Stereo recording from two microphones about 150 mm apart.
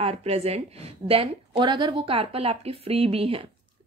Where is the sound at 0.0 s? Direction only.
45° right (ahead or behind).